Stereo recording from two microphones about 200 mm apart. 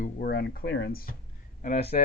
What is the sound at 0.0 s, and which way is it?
Speech, 50° left (ahead or behind).